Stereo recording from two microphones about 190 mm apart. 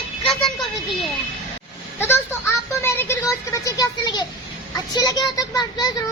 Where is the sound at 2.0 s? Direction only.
10° left (ahead or behind).